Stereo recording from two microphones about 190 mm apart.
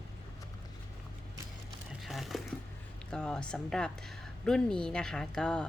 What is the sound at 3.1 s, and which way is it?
A woman's voice, 5° left (ahead or behind).